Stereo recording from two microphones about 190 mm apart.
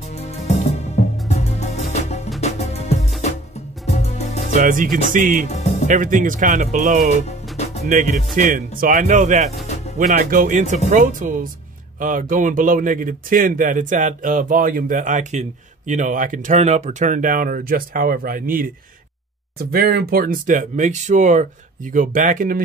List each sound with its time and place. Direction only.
0.1 s music: 35° left (ahead or behind)
4.6 s speech: 45° right (ahead or behind)
5.5 s music: 35° left (ahead or behind)
5.9 s speech: 45° right (ahead or behind)
19.7 s speech: 55° right (ahead or behind)